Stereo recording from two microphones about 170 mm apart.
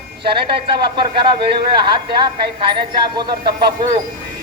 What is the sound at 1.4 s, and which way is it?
A man's voice, 30° right (ahead or behind).